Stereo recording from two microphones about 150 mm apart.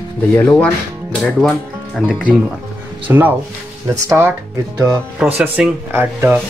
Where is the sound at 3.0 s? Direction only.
10° right (ahead or behind).